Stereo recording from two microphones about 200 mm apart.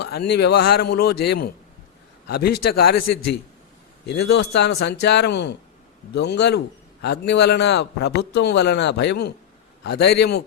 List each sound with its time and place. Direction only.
0.0 s a man's voice: 55° left (ahead or behind)